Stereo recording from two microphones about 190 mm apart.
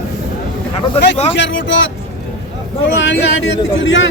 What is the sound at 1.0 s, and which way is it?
Speech, 30° left (ahead or behind).